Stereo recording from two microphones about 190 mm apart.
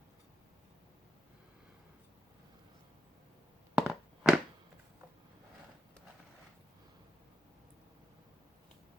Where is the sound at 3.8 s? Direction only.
5° right (ahead or behind).